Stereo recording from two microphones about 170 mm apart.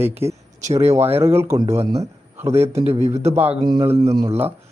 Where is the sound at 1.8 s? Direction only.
35° right (ahead or behind).